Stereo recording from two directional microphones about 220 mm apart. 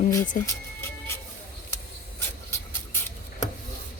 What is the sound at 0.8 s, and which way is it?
Music, 10° left (ahead or behind).